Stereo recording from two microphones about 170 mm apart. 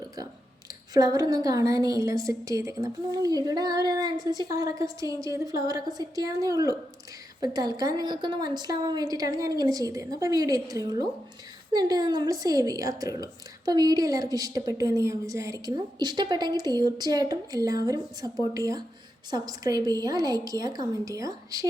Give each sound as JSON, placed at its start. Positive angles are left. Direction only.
{"t": 0.7, "sound": "a woman's voice", "side_deg": -20}